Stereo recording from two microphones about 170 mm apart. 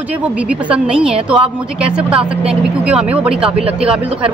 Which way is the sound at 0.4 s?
5° right (ahead or behind).